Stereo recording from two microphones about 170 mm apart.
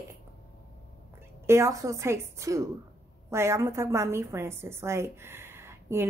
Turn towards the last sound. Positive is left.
turn(degrees=-15)  # may be behind; listen again after turning